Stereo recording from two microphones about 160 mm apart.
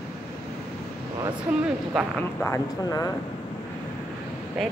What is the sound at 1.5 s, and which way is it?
Speech, 5° right (ahead or behind).